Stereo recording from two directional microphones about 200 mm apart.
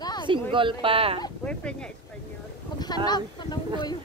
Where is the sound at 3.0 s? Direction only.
20° left (ahead or behind).